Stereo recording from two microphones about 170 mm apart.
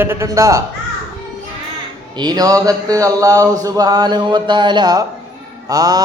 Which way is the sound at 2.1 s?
25° right (ahead or behind).